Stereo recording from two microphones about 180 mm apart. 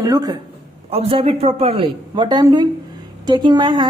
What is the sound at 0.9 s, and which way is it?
A woman's voice, 35° right (ahead or behind).